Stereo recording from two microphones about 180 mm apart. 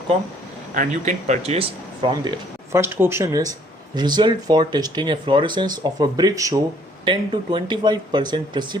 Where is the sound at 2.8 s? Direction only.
10° right (ahead or behind).